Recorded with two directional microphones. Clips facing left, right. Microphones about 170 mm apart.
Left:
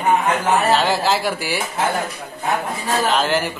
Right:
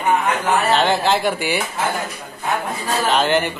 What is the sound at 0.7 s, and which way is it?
Speech, 5° left (ahead or behind).